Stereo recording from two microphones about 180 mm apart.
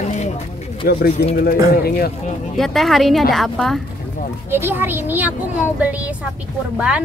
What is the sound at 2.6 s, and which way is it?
A woman's voice, centre (ahead or behind).